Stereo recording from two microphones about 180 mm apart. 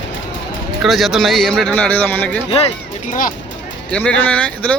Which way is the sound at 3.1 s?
50° left (ahead or behind).